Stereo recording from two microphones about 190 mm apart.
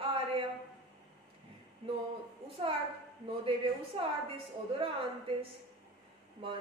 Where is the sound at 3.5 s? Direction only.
30° right (ahead or behind).